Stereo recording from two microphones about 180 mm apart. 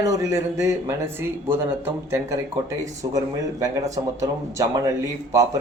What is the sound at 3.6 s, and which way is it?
Speech, 20° right (ahead or behind).